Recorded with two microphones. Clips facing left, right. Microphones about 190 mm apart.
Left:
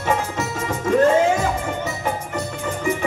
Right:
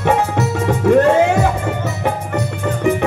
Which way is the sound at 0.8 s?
65° right (ahead or behind).